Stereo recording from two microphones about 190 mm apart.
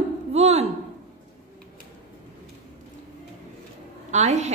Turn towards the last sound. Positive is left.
turn(degrees=-35)  # may be behind; listen again after turning